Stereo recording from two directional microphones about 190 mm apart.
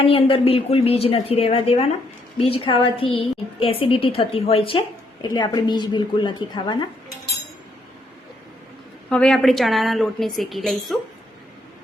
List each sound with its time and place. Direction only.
0.0 s a woman's voice: 30° left (ahead or behind)
9.0 s a woman's voice: 5° left (ahead or behind)